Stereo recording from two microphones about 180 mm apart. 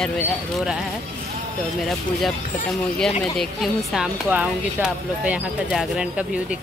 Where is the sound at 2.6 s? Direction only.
5° left (ahead or behind).